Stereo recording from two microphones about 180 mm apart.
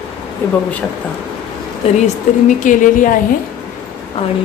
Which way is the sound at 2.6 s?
45° left (ahead or behind).